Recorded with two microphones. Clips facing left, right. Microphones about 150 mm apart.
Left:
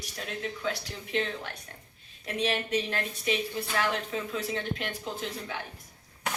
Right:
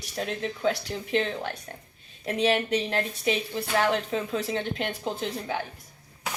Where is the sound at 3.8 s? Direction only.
30° right (ahead or behind).